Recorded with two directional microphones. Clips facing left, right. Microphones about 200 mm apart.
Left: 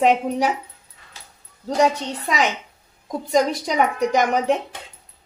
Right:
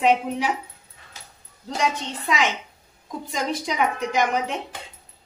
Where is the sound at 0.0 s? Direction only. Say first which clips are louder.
Left 3 dB; 45° left (ahead or behind).